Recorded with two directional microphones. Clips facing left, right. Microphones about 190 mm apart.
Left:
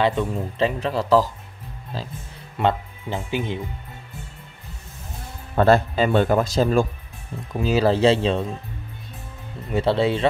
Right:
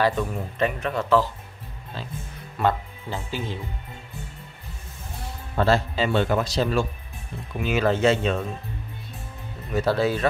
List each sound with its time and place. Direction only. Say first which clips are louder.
0.0 s speech: left 2 dB; 20° left (ahead or behind)
2.6 s speech: left 2 dB; 20° left (ahead or behind)
5.6 s speech: left 5 dB; 55° left (ahead or behind)
7.5 s speech: left 3 dB; 35° left (ahead or behind)
9.7 s speech: left 2 dB; 25° left (ahead or behind)